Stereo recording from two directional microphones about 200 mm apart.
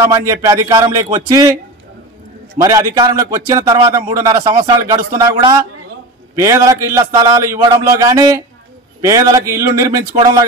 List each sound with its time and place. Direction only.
0.0 s a man's voice: 15° right (ahead or behind)
2.6 s a man's voice: 20° right (ahead or behind)